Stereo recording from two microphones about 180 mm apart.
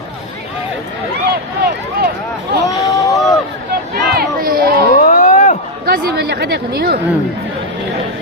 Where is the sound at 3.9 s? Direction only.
55° right (ahead or behind).